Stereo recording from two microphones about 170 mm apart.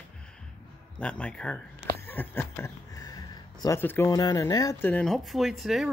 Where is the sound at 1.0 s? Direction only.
5° left (ahead or behind).